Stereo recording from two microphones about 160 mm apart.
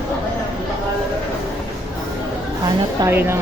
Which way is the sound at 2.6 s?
25° right (ahead or behind).